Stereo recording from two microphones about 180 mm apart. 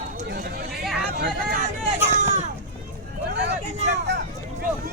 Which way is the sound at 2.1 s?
40° right (ahead or behind).